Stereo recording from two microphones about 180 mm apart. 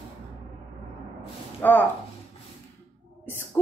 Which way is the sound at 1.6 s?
10° left (ahead or behind).